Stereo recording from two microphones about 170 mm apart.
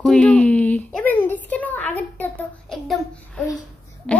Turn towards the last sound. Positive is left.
turn(degrees=0)  # may be behind; listen again after turning